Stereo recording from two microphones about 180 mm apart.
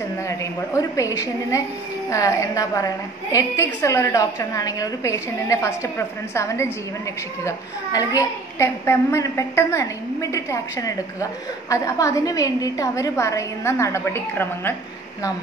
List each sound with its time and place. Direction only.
0.3 s a child's voice: 15° left (ahead or behind)